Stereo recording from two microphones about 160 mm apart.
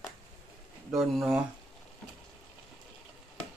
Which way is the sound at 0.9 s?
Centre (ahead or behind).